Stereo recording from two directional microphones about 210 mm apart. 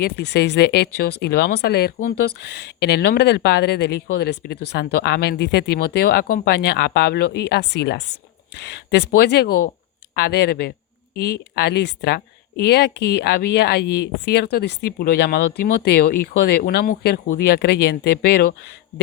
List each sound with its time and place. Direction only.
0.0 s speech: 50° left (ahead or behind)